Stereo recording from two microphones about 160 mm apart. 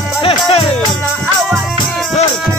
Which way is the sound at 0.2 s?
35° left (ahead or behind).